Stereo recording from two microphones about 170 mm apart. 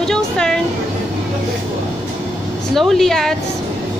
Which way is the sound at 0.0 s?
5° left (ahead or behind).